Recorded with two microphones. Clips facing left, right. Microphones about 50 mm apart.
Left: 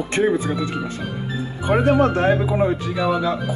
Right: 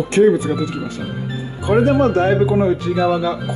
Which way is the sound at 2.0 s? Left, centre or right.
Centre.